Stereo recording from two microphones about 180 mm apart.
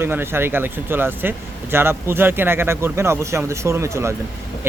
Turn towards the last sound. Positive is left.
turn(degrees=-15)  # may be behind; listen again after turning